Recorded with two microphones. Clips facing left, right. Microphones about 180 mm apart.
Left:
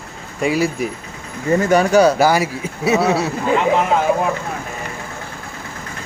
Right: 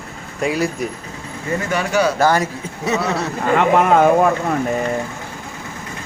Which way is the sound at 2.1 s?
10° left (ahead or behind).